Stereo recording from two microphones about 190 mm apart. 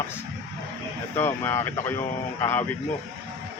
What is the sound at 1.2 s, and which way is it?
Speech, 10° left (ahead or behind).